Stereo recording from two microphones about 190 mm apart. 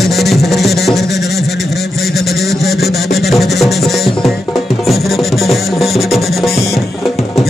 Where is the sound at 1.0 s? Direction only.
60° left (ahead or behind).